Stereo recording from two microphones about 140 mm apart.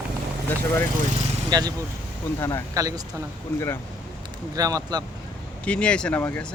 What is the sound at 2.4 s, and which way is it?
Speech, 20° left (ahead or behind).